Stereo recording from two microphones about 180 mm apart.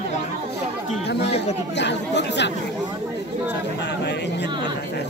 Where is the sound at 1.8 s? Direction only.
75° left (ahead or behind).